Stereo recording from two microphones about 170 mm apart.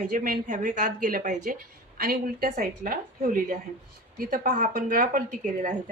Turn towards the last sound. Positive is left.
turn(degrees=-50)  # may be behind; listen again after turning